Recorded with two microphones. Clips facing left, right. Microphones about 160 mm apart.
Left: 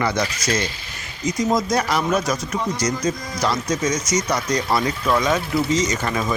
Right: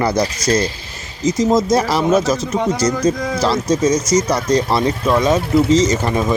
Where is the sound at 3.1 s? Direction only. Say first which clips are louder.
Right 10 dB; 65° right (ahead or behind).